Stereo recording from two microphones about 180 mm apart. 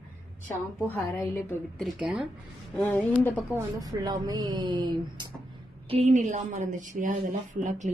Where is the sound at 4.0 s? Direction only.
20° right (ahead or behind).